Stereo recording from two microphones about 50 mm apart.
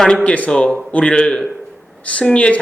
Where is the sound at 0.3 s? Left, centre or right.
Left.